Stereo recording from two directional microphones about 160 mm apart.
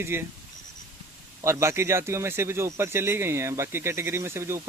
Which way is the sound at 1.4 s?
15° right (ahead or behind).